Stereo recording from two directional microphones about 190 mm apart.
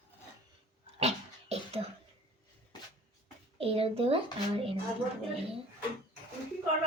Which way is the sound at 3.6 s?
30° right (ahead or behind).